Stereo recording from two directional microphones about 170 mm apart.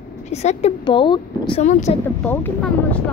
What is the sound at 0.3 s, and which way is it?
Speech, 40° left (ahead or behind).